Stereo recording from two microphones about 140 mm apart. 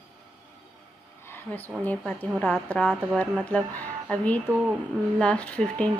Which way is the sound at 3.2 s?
10° left (ahead or behind).